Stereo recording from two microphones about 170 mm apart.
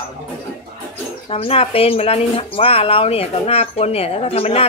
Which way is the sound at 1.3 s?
35° left (ahead or behind).